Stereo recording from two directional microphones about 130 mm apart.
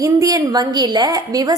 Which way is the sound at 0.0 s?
25° right (ahead or behind).